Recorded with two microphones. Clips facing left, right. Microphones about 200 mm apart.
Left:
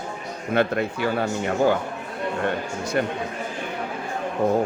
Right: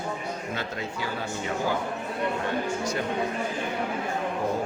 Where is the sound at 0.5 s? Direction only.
60° left (ahead or behind).